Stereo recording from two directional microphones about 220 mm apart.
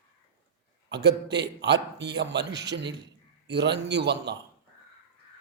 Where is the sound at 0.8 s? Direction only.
50° right (ahead or behind).